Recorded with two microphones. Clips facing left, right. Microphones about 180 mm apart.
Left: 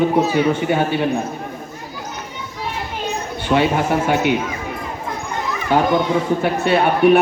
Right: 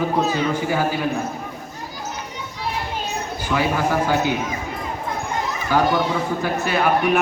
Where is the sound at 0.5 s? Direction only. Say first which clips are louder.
Left 3 dB; 25° left (ahead or behind).